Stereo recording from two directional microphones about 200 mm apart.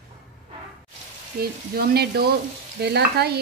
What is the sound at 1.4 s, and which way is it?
Speech, 50° right (ahead or behind).